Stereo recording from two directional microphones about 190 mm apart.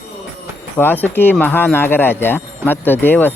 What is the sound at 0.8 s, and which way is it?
Speech, 10° left (ahead or behind).